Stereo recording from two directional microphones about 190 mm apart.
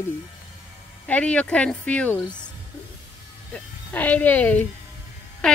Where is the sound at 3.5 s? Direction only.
5° left (ahead or behind).